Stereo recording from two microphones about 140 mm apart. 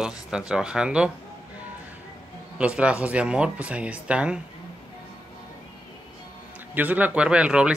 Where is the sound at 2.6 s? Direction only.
10° right (ahead or behind).